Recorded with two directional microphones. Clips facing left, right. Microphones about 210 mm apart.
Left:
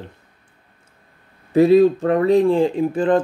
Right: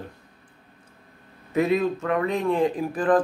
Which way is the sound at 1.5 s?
30° left (ahead or behind).